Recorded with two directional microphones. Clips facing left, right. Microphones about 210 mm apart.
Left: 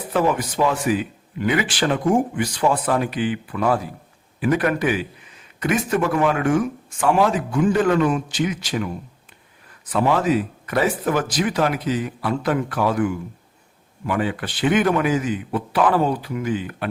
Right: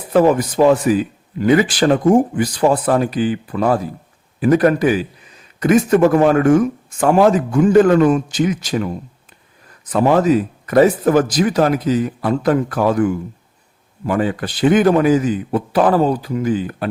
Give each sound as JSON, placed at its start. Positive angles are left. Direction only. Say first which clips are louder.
{"t": 0.1, "sound": "a man's voice", "louder": "right 8 dB", "side_deg": -40}
{"t": 9.9, "sound": "a man's voice", "louder": "right 5 dB", "side_deg": -40}